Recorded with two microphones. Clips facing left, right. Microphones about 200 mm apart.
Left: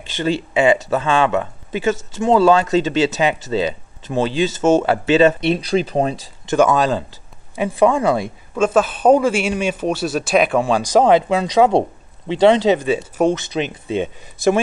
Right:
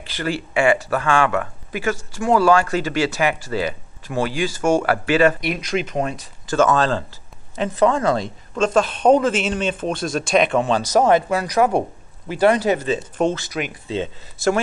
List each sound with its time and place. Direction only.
0.0 s speech: 20° left (ahead or behind)
6.4 s speech: 15° left (ahead or behind)